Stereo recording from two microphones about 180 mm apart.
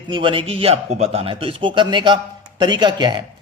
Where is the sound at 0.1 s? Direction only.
30° right (ahead or behind).